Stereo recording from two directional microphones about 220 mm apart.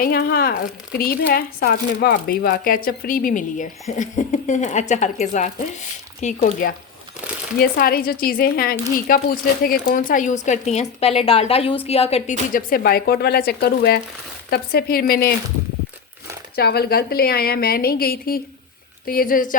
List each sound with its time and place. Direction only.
0.0 s speech: 45° left (ahead or behind)
16.6 s speech: 45° left (ahead or behind)